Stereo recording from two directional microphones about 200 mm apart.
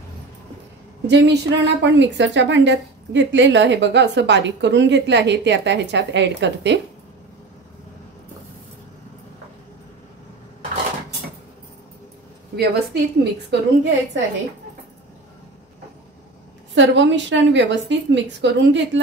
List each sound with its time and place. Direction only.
1.0 s a woman's voice: 60° right (ahead or behind)
12.5 s a woman's voice: 55° right (ahead or behind)
16.7 s a woman's voice: 65° right (ahead or behind)